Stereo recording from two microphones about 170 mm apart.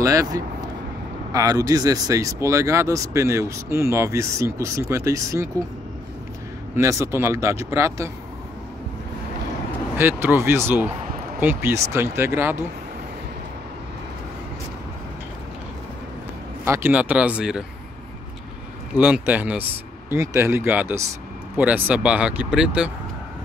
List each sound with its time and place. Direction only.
0.0 s speech: 20° right (ahead or behind)
6.8 s speech: 15° right (ahead or behind)
9.9 s speech: 15° right (ahead or behind)
16.6 s speech: 15° right (ahead or behind)
18.9 s speech: 10° right (ahead or behind)